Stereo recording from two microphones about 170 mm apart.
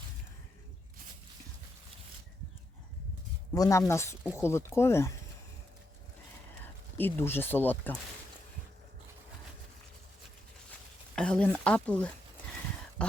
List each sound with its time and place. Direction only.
3.5 s speech: 20° left (ahead or behind)
6.9 s speech: 10° left (ahead or behind)
10.7 s speech: 5° left (ahead or behind)
13.0 s a sound: 5° left (ahead or behind)